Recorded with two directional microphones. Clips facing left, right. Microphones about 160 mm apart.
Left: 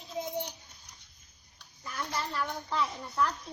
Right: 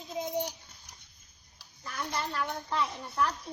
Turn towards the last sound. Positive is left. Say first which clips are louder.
# even
turn(degrees=0)  # may be behind; listen again after turning